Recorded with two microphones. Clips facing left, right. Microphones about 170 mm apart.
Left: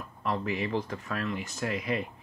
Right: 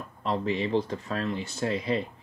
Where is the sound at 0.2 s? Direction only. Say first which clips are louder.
Right 3 dB; 30° right (ahead or behind).